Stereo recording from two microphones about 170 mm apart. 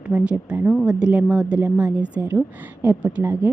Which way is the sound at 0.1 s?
5° right (ahead or behind).